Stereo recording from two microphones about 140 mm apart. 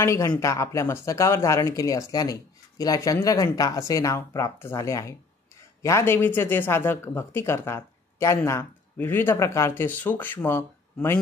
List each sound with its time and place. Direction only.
0.0 s speech: 20° left (ahead or behind)